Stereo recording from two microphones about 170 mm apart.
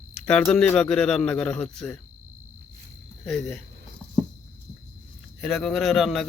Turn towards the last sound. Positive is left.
turn(degrees=0)  # may be behind; listen again after turning